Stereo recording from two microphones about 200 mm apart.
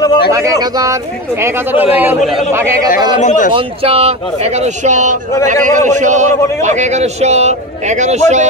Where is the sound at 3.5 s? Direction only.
30° right (ahead or behind).